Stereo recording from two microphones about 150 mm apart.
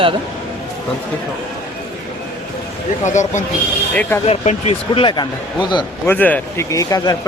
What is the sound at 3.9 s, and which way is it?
Speech, 10° left (ahead or behind).